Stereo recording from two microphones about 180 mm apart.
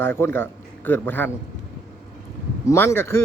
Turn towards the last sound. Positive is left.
turn(degrees=15)  # may be behind; listen again after turning